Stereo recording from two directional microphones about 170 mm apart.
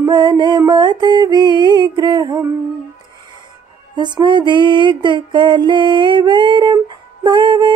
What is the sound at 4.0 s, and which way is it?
Music, 25° right (ahead or behind).